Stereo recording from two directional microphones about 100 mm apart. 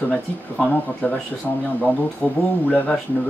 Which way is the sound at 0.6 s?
15° left (ahead or behind).